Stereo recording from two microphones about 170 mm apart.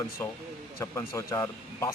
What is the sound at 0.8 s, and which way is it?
Speech, 15° left (ahead or behind).